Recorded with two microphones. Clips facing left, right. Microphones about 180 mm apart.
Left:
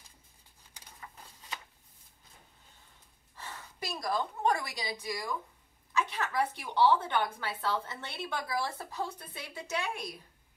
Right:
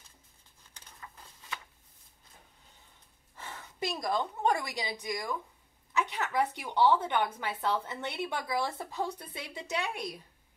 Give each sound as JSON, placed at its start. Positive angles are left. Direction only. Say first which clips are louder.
{"t": 3.3, "sound": "a woman's voice", "louder": "right 4 dB", "side_deg": -20}